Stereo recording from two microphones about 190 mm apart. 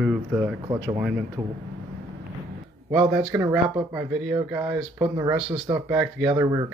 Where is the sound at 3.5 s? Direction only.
10° right (ahead or behind).